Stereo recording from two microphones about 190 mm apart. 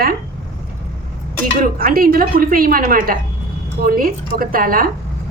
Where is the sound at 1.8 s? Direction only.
50° right (ahead or behind).